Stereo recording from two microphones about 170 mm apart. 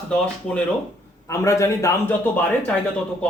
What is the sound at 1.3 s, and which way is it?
A man's voice, 15° left (ahead or behind).